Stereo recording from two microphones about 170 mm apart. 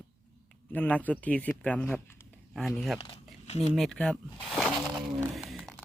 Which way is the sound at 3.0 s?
30° left (ahead or behind).